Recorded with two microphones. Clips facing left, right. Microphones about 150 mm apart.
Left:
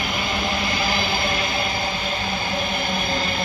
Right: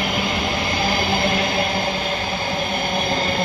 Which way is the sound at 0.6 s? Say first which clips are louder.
Right 2 dB; 25° right (ahead or behind).